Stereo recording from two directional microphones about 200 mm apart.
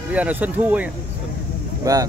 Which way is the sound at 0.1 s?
10° right (ahead or behind).